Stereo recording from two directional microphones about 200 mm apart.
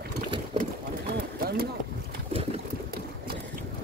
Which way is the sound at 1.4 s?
50° right (ahead or behind).